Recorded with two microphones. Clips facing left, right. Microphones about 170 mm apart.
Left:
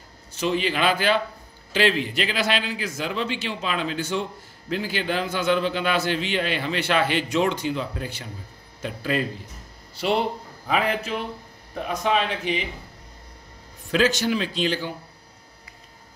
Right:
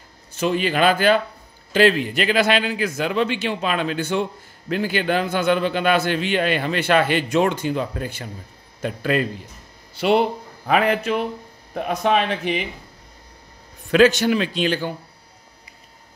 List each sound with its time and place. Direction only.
0.4 s a man's voice: 50° right (ahead or behind)
8.8 s speech: 60° right (ahead or behind)
10.7 s speech: 60° right (ahead or behind)
13.9 s speech: 60° right (ahead or behind)